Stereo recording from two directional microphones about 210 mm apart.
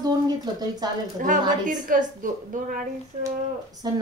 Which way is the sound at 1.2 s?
40° right (ahead or behind).